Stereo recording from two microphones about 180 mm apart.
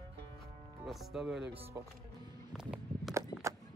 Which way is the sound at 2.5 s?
5° right (ahead or behind).